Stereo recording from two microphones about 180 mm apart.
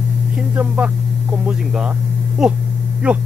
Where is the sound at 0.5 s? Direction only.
5° right (ahead or behind).